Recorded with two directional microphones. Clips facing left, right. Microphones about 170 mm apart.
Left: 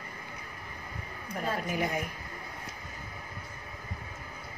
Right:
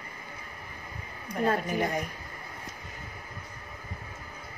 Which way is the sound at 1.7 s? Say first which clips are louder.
Right 2 dB; 5° left (ahead or behind).